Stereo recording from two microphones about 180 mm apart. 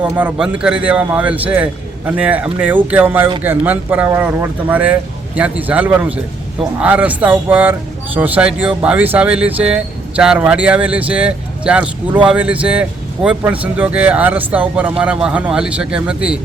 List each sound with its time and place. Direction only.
0.0 s speech: 10° right (ahead or behind)